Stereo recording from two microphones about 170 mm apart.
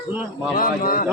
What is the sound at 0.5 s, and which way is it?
Speech, 60° left (ahead or behind).